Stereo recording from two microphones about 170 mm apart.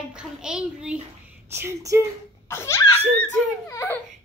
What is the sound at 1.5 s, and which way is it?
Speech, 15° right (ahead or behind).